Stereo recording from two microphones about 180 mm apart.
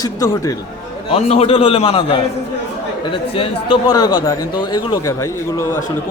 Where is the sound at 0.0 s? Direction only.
20° left (ahead or behind).